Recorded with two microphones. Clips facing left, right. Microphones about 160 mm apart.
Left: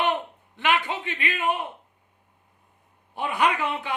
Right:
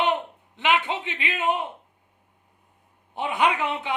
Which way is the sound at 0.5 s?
20° right (ahead or behind).